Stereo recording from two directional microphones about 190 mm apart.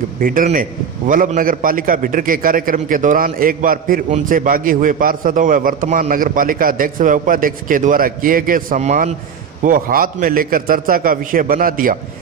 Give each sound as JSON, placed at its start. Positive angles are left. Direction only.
{"t": 0.2, "sound": "a man's voice", "side_deg": -45}